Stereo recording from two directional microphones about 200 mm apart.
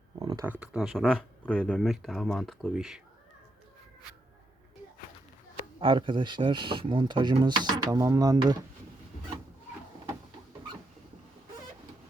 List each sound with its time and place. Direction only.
0.2 s a sound: 20° right (ahead or behind)
0.6 s speech: 5° right (ahead or behind)
5.8 s speech: 25° right (ahead or behind)